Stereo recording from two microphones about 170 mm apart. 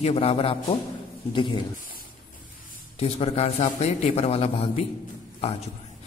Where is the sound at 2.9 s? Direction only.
35° left (ahead or behind).